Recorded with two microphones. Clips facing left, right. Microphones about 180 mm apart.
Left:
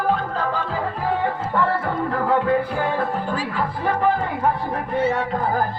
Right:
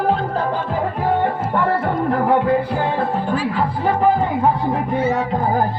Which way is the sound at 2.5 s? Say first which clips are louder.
Right 2 dB; 35° right (ahead or behind).